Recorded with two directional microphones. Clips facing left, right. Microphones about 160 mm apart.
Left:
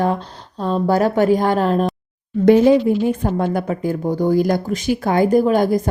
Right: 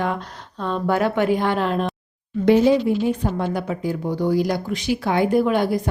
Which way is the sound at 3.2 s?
50° left (ahead or behind).